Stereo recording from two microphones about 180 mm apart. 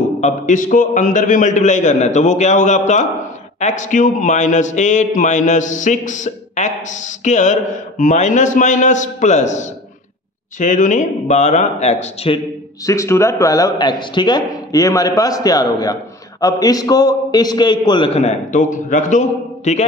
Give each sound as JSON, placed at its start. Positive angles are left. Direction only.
{"t": 0.2, "sound": "a man's voice", "side_deg": 45}
{"t": 12.8, "sound": "speech", "side_deg": 15}